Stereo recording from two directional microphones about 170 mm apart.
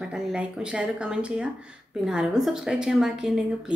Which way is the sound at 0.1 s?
5° right (ahead or behind).